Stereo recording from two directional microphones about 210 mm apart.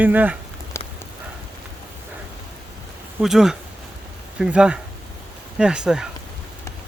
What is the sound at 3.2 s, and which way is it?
Speech, centre (ahead or behind).